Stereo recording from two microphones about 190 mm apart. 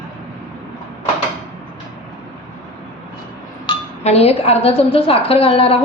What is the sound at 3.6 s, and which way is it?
A woman's voice, 30° left (ahead or behind).